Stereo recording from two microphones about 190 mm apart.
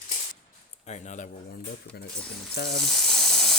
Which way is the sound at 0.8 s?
40° left (ahead or behind).